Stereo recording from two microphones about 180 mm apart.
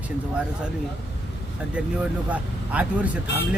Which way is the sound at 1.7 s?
10° right (ahead or behind).